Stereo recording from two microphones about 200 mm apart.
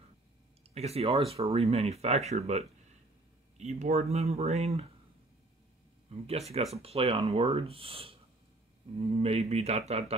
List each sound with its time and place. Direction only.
0.7 s speech: 30° right (ahead or behind)
6.0 s speech: 30° right (ahead or behind)